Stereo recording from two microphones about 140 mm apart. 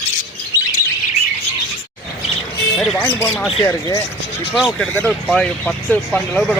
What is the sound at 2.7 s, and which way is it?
Speech, centre (ahead or behind).